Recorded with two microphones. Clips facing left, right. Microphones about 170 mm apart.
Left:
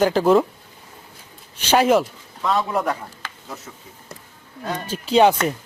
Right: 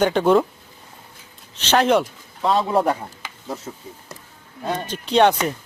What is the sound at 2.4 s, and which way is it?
Speech, 30° right (ahead or behind).